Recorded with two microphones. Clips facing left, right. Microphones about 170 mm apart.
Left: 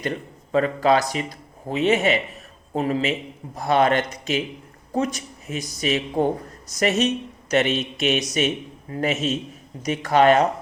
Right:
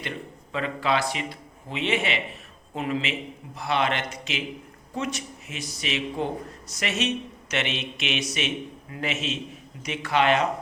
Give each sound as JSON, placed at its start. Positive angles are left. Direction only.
{"t": 0.5, "sound": "a man's voice", "side_deg": 40}